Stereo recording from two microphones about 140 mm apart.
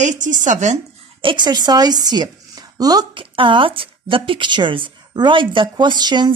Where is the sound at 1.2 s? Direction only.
35° right (ahead or behind).